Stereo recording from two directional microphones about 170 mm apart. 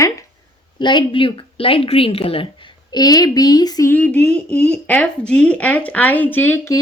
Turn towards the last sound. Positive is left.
turn(degrees=15)  # may be behind; listen again after turning